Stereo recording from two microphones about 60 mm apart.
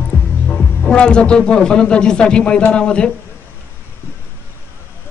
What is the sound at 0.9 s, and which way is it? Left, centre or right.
A woman's voice, centre.